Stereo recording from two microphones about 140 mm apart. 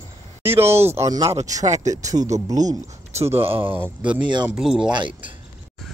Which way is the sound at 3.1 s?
45° right (ahead or behind).